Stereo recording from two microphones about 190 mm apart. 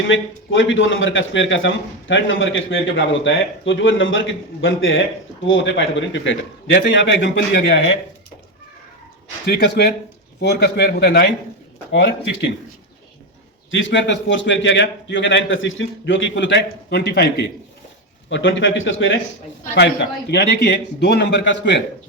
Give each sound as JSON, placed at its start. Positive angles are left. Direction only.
{"t": 0.1, "sound": "a man's voice", "side_deg": 85}
{"t": 5.5, "sound": "a man's voice", "side_deg": 80}
{"t": 9.5, "sound": "a man's voice", "side_deg": 60}
{"t": 13.7, "sound": "a man's voice", "side_deg": 80}
{"t": 18.3, "sound": "a man's voice", "side_deg": 75}
{"t": 19.7, "sound": "a man's voice", "side_deg": 60}